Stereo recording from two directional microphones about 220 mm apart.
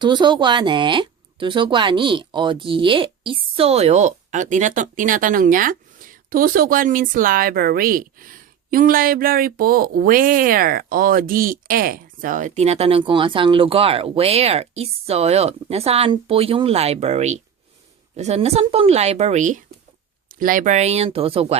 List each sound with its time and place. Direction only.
0.0 s speech: 20° right (ahead or behind)